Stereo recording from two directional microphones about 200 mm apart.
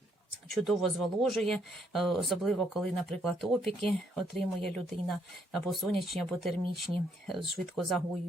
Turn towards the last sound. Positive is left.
turn(degrees=0)  # may be behind; listen again after turning